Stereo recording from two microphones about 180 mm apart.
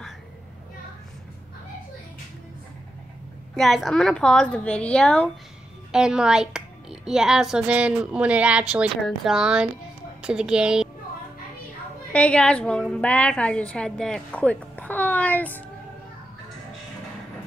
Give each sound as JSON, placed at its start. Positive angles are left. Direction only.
{"t": 3.5, "sound": "a woman's voice", "side_deg": 0}
{"t": 12.1, "sound": "a woman's voice", "side_deg": 5}